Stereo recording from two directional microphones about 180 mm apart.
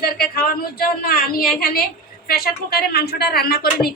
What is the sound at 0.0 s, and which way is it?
A woman's voice, 55° left (ahead or behind).